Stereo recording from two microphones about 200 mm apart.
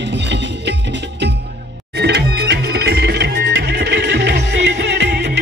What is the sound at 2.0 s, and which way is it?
Music, 55° right (ahead or behind).